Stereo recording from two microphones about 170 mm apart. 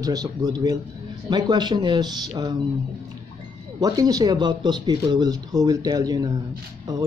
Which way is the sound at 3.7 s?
20° right (ahead or behind).